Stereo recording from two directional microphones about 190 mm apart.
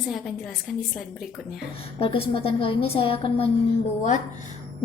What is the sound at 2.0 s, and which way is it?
A woman's voice, 30° left (ahead or behind).